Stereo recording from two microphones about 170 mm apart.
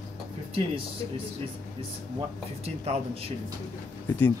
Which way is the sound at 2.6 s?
40° right (ahead or behind).